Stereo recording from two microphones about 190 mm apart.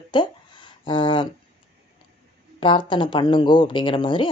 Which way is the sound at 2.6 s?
25° left (ahead or behind).